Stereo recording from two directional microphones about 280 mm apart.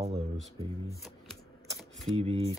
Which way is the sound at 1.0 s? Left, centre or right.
Centre.